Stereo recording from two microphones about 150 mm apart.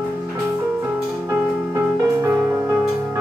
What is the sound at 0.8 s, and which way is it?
Music, 15° right (ahead or behind).